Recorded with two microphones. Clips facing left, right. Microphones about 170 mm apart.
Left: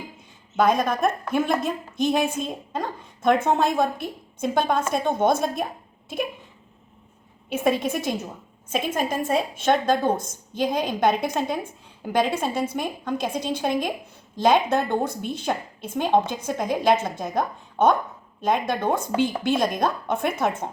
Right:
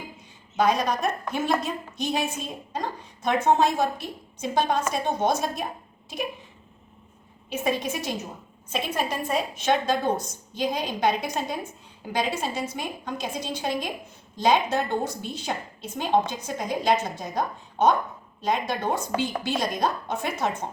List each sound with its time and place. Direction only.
0.5 s a woman's voice: 50° left (ahead or behind)
7.5 s a woman's voice: 55° left (ahead or behind)